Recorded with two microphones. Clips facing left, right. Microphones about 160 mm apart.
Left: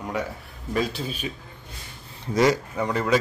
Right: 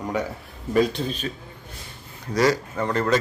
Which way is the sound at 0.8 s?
5° left (ahead or behind).